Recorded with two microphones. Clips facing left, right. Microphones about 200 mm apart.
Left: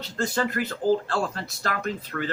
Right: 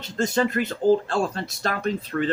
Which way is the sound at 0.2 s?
25° right (ahead or behind).